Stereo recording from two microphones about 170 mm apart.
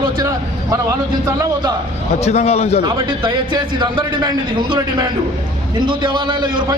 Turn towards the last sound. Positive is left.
turn(degrees=-25)  # may be behind; listen again after turning